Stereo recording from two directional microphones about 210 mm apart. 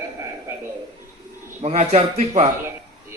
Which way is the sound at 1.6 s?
30° right (ahead or behind).